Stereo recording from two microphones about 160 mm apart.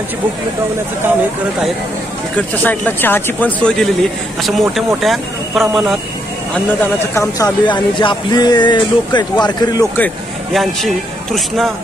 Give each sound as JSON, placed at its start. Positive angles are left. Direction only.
{"t": 2.3, "sound": "speech", "side_deg": 10}
{"t": 6.5, "sound": "speech", "side_deg": 10}
{"t": 7.3, "sound": "speech", "side_deg": 25}
{"t": 9.9, "sound": "speech", "side_deg": 5}